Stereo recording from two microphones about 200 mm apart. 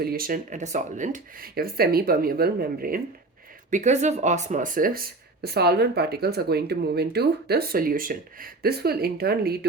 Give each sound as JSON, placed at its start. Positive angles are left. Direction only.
{"t": 0.0, "sound": "speech", "side_deg": -50}
{"t": 3.7, "sound": "speech", "side_deg": -35}